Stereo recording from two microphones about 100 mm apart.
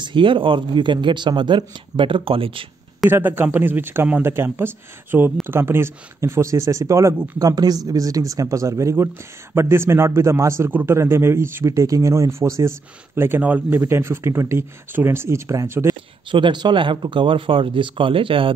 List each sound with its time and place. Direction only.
0.0 s speech: 55° right (ahead or behind)
3.1 s a man's voice: 20° right (ahead or behind)
16.3 s speech: 55° right (ahead or behind)